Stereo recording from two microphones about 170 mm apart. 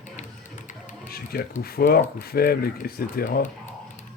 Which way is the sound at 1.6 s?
65° left (ahead or behind).